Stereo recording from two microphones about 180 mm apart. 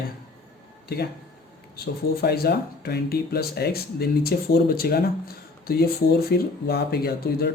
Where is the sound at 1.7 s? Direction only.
60° left (ahead or behind).